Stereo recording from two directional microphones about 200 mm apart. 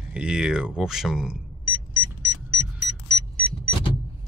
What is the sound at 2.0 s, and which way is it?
Car, 30° right (ahead or behind).